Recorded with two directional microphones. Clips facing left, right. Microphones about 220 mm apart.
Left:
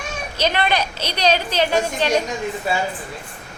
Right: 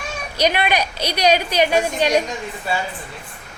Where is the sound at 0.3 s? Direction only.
10° right (ahead or behind).